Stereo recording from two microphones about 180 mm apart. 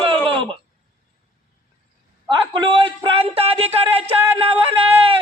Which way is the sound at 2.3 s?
25° right (ahead or behind).